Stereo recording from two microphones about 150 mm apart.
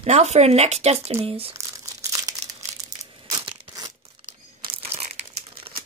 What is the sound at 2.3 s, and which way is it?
Crumpling, 25° right (ahead or behind).